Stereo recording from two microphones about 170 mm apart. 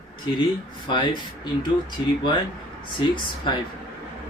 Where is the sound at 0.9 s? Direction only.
30° left (ahead or behind).